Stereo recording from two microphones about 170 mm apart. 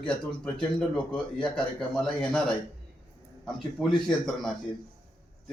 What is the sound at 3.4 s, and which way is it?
A man's voice, centre (ahead or behind).